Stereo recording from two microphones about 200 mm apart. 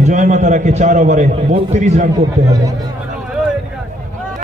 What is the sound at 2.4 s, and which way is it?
Speech, 15° right (ahead or behind).